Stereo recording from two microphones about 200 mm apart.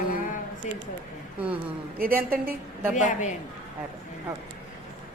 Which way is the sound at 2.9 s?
40° left (ahead or behind).